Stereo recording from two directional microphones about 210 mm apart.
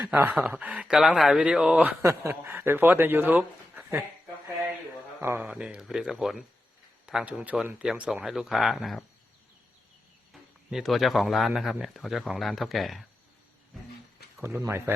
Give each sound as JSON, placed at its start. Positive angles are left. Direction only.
{"t": 0.0, "sound": "speech", "side_deg": -10}
{"t": 5.2, "sound": "a man's voice", "side_deg": -10}
{"t": 10.7, "sound": "a man's voice", "side_deg": 0}
{"t": 13.7, "sound": "a sound", "side_deg": 0}
{"t": 14.4, "sound": "speech", "side_deg": -10}